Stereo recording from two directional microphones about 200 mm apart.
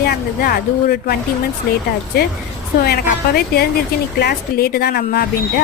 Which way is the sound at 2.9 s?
50° left (ahead or behind).